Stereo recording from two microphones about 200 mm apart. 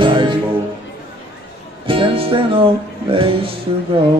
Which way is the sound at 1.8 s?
25° right (ahead or behind).